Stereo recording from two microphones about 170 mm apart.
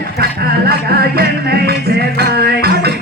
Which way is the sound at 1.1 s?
65° right (ahead or behind).